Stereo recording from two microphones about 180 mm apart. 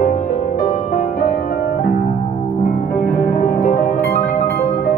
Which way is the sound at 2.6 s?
50° left (ahead or behind).